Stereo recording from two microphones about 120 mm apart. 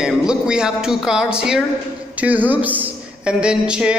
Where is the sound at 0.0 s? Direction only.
5° right (ahead or behind).